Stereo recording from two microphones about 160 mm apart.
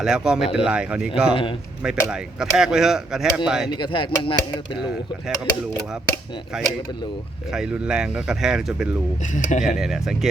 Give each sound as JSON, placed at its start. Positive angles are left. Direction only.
{"t": 0.0, "sound": "speech", "side_deg": -5}
{"t": 3.7, "sound": "speech", "side_deg": 30}
{"t": 6.5, "sound": "speech", "side_deg": -5}
{"t": 9.2, "sound": "speech", "side_deg": 50}
{"t": 9.6, "sound": "speech", "side_deg": -5}